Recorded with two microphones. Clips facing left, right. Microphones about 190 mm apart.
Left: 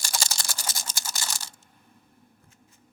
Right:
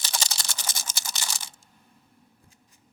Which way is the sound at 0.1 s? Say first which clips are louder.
Even; centre (ahead or behind).